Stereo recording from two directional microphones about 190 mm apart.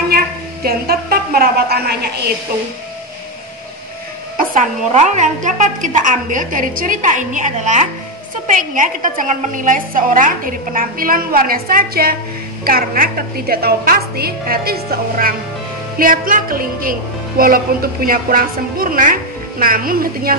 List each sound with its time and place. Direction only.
0.7 s a woman's voice: 55° right (ahead or behind)
4.4 s a woman's voice: 40° right (ahead or behind)